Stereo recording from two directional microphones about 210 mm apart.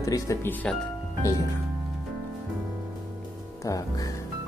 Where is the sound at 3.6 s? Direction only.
15° left (ahead or behind).